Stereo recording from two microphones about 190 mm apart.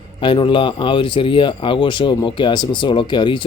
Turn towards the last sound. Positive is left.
turn(degrees=25)  # may be behind; listen again after turning